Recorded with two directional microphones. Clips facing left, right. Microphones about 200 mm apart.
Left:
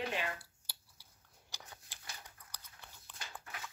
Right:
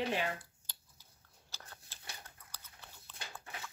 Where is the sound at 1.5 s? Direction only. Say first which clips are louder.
Left 1 dB; 15° left (ahead or behind).